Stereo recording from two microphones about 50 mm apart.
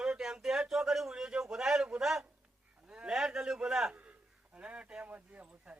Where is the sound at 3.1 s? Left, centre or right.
Centre.